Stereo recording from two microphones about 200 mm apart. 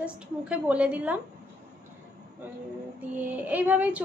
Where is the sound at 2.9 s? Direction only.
10° right (ahead or behind).